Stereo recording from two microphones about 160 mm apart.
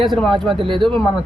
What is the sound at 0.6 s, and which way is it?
Speech, 30° right (ahead or behind).